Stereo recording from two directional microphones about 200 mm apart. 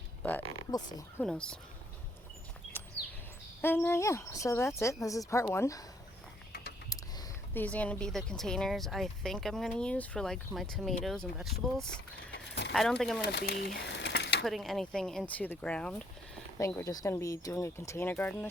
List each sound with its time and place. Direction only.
0.2 s a sound: 10° left (ahead or behind)
1.2 s speech: 5° left (ahead or behind)
3.6 s speech: 10° left (ahead or behind)
6.9 s speech: 15° left (ahead or behind)
12.3 s a sound: 55° left (ahead or behind)
12.7 s speech: centre (ahead or behind)
13.2 s speech: 50° left (ahead or behind)
13.7 s a sound: 60° left (ahead or behind)
14.4 s speech: centre (ahead or behind)